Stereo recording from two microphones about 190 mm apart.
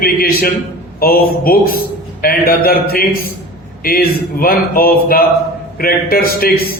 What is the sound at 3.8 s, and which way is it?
Speech, 50° left (ahead or behind).